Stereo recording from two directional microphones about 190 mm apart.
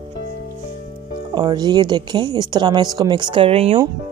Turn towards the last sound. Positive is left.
turn(degrees=-30)  # may be behind; listen again after turning